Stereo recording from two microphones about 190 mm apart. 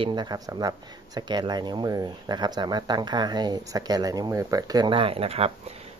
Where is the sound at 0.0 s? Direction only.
25° right (ahead or behind).